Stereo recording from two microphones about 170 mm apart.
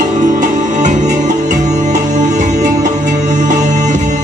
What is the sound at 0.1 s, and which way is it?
Music, 45° right (ahead or behind).